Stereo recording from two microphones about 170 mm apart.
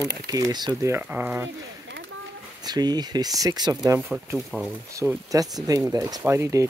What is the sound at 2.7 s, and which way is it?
Speech, 25° right (ahead or behind).